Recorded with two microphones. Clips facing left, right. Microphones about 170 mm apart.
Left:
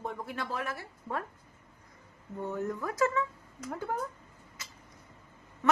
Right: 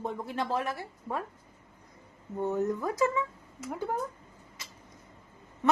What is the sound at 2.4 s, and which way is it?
Speech, 20° right (ahead or behind).